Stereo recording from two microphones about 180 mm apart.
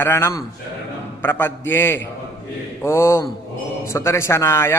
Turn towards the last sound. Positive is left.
turn(degrees=15)  # may be behind; listen again after turning